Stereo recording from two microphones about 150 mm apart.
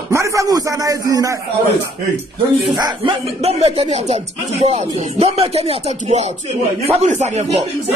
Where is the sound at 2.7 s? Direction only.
30° right (ahead or behind).